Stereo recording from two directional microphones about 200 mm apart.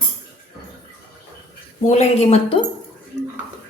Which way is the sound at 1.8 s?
35° left (ahead or behind).